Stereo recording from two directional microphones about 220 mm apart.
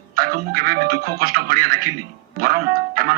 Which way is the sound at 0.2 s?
40° right (ahead or behind).